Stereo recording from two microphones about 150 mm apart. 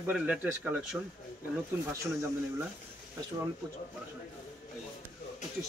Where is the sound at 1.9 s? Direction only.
20° right (ahead or behind).